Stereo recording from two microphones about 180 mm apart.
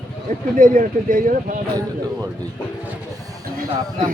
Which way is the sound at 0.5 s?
50° right (ahead or behind).